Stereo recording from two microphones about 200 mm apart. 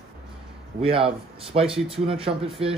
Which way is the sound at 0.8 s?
25° right (ahead or behind).